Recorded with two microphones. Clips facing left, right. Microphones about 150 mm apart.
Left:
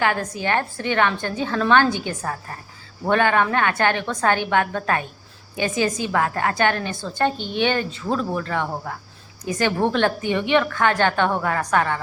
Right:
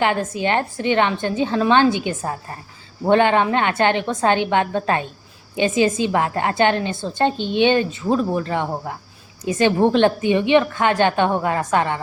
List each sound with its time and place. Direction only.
0.0 s a woman's voice: 20° right (ahead or behind)